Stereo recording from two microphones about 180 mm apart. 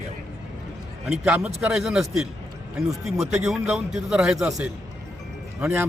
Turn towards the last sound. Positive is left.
turn(degrees=-10)  # may be behind; listen again after turning